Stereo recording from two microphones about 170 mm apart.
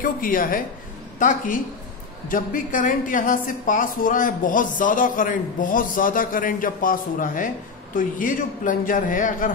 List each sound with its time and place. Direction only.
0.0 s a woman's voice: 55° left (ahead or behind)